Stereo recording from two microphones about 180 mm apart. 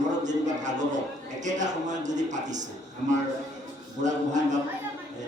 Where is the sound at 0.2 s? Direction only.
45° right (ahead or behind).